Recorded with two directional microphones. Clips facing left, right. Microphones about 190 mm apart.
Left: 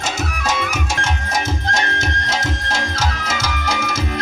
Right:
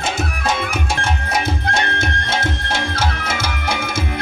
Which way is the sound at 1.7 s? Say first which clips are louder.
Right 1 dB; 60° right (ahead or behind).